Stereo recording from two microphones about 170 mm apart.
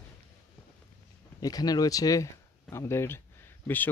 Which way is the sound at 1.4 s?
20° left (ahead or behind).